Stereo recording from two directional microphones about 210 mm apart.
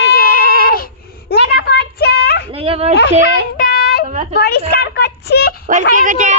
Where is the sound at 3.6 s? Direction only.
40° left (ahead or behind).